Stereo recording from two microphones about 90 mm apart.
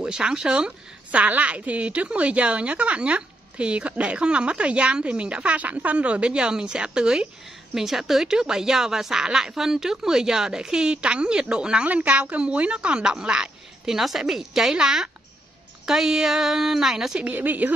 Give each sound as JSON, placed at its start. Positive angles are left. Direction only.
{"t": 0.0, "sound": "a woman's voice", "side_deg": -10}
{"t": 17.2, "sound": "a woman's voice", "side_deg": -20}